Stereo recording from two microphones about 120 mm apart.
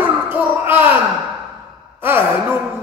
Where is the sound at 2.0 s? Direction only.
15° right (ahead or behind).